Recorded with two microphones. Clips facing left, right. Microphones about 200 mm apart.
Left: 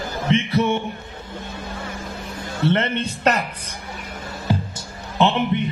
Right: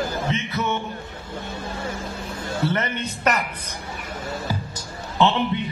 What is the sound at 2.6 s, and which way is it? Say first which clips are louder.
Speech: left 5 dB; 30° left (ahead or behind).